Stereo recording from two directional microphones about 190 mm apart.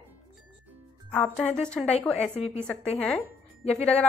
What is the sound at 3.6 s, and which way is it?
Speech, 35° left (ahead or behind).